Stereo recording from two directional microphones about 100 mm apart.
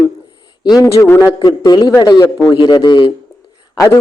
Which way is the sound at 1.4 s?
45° left (ahead or behind).